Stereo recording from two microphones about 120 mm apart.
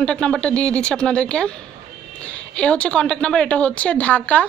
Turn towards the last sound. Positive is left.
turn(degrees=15)  # may be behind; listen again after turning